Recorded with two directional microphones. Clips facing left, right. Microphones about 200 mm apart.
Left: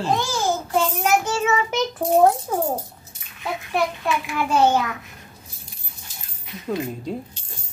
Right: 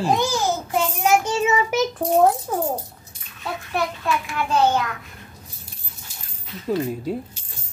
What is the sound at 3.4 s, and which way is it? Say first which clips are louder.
Speech: left 2 dB; 15° left (ahead or behind).